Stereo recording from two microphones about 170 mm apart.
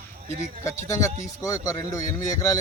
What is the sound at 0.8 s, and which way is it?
Speech, 20° left (ahead or behind).